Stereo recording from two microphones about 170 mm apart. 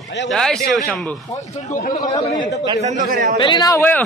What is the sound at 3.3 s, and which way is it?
Speech, 25° left (ahead or behind).